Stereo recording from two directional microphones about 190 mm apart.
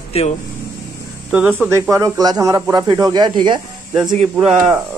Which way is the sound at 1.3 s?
10° right (ahead or behind).